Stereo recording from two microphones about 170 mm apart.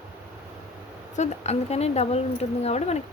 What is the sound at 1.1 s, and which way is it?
Speech, 40° left (ahead or behind).